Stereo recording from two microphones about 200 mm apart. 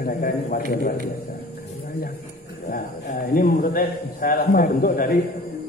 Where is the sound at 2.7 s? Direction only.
45° left (ahead or behind).